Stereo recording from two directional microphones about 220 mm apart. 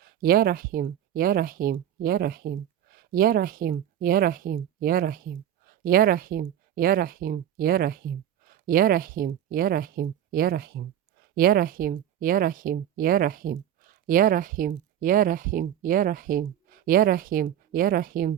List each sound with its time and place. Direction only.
0.0 s speech: 40° right (ahead or behind)